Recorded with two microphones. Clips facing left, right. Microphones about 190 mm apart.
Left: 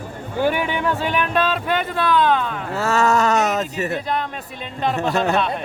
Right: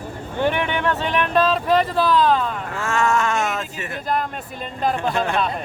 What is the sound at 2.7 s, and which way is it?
Speech, 40° left (ahead or behind).